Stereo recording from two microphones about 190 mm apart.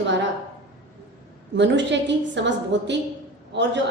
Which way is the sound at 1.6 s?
70° right (ahead or behind).